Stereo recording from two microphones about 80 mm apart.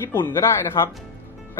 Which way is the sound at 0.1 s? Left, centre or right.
Left.